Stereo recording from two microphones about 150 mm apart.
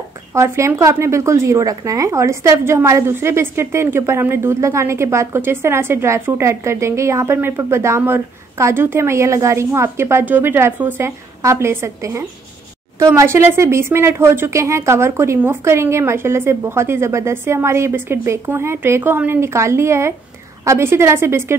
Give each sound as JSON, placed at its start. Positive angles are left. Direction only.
{"t": 0.3, "sound": "a woman's voice", "side_deg": -20}